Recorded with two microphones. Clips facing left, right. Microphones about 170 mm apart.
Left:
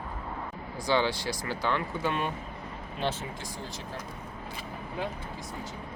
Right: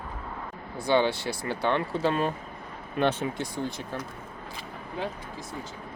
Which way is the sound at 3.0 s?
65° right (ahead or behind).